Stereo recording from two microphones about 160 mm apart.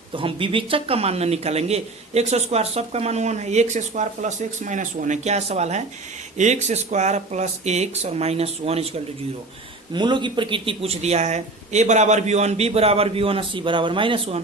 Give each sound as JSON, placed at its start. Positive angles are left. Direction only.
{"t": 0.1, "sound": "speech", "side_deg": -35}
{"t": 9.9, "sound": "speech", "side_deg": -30}